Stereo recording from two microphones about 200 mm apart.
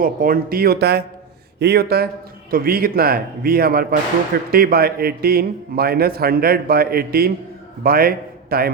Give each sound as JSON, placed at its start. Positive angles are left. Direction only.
{"t": 0.0, "sound": "a man's voice", "side_deg": -45}